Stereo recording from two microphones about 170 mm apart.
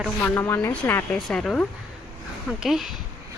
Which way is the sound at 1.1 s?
Centre (ahead or behind).